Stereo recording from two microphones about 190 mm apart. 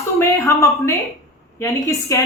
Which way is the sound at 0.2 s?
15° left (ahead or behind).